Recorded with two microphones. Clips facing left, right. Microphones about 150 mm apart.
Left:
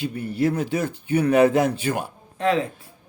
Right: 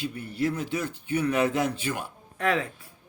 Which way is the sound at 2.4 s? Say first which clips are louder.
Left 5 dB; 30° left (ahead or behind).